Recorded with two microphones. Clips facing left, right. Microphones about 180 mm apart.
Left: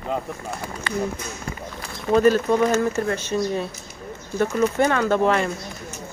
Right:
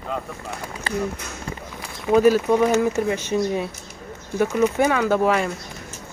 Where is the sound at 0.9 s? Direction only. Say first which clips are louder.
Right 1 dB; 30° right (ahead or behind).